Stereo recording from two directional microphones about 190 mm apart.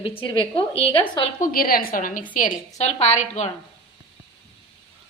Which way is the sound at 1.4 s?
50° left (ahead or behind).